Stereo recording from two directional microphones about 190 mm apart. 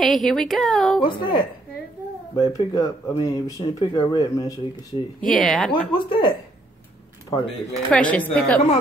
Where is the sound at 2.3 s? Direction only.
20° left (ahead or behind).